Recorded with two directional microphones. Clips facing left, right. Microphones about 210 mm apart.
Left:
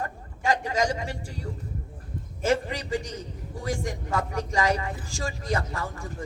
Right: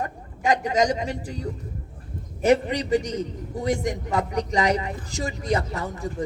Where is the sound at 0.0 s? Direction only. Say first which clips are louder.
Right 3 dB; 20° right (ahead or behind).